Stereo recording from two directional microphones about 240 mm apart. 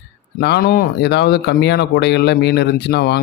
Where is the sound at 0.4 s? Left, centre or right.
Left.